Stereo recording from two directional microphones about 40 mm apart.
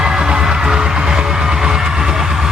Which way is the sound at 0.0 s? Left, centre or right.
Centre.